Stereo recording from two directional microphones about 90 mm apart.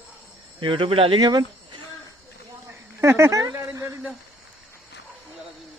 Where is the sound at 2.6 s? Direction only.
35° right (ahead or behind).